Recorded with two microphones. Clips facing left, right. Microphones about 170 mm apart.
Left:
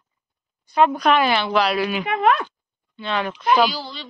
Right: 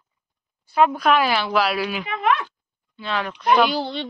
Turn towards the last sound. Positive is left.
turn(degrees=-60)  # may be behind; listen again after turning